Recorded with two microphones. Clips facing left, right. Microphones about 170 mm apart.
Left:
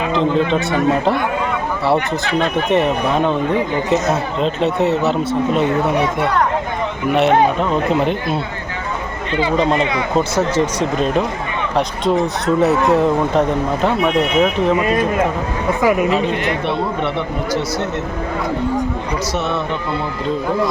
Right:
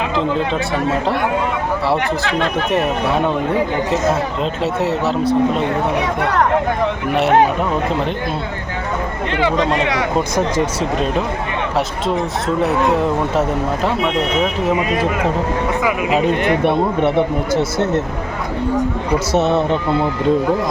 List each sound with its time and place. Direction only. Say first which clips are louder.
2.6 s speech: left 2 dB; centre (ahead or behind)
7.1 s speech: left 3 dB; centre (ahead or behind)
9.6 s speech: left 5 dB; centre (ahead or behind)
9.8 s speech: right 1 dB; 80° right
10.5 s speech: left 1 dB; 10° right (ahead or behind)
12.9 s speech: left 2 dB; centre (ahead or behind)
15.8 s speech: left 4 dB; 45° left (ahead or behind)
16.6 s speech: right 4 dB; 50° right (ahead or behind)
19.3 s speech: right 7 dB; 30° right (ahead or behind)